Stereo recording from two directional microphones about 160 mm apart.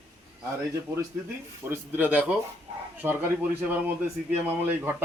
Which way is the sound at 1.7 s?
10° right (ahead or behind).